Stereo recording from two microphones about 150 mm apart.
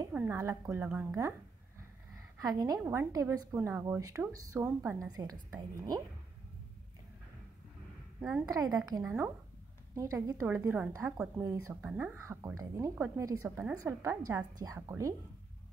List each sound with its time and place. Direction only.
0.1 s a woman's voice: 15° right (ahead or behind)
2.3 s a woman's voice: 25° right (ahead or behind)
3.5 s a woman's voice: 10° right (ahead or behind)
8.2 s a woman's voice: 5° right (ahead or behind)
8.5 s a woman's voice: 25° right (ahead or behind)
13.6 s a woman's voice: 10° right (ahead or behind)
14.0 s a woman's voice: 20° right (ahead or behind)